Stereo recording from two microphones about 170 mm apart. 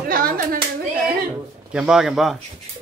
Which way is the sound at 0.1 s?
55° right (ahead or behind).